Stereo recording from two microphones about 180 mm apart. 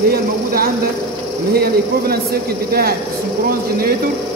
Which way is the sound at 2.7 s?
55° right (ahead or behind).